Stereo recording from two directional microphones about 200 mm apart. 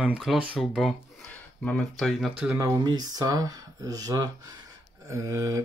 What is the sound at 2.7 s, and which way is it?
Speech, 20° right (ahead or behind).